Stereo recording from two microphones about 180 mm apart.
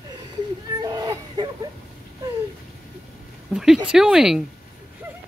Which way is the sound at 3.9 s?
5° right (ahead or behind).